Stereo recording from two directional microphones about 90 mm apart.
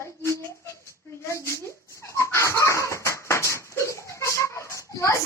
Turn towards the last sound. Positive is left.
turn(degrees=35)  # may be behind; listen again after turning